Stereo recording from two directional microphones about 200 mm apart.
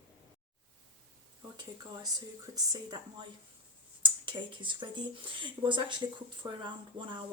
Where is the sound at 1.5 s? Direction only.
20° right (ahead or behind).